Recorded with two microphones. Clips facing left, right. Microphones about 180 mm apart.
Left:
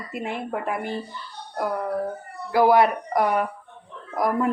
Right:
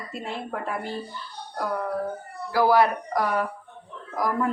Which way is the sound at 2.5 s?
20° left (ahead or behind).